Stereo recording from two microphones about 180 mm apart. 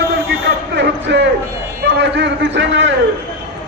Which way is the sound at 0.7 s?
75° right (ahead or behind).